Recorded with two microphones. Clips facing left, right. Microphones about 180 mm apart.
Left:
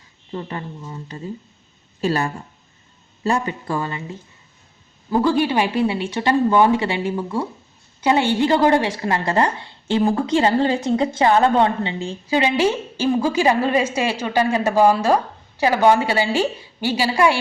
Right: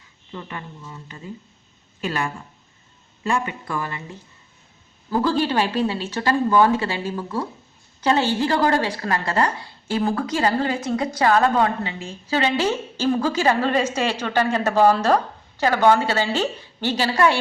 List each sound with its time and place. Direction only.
0.3 s a woman's voice: 30° left (ahead or behind)
12.3 s speech: 15° left (ahead or behind)